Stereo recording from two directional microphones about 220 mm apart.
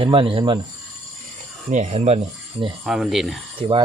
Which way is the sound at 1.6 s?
30° right (ahead or behind).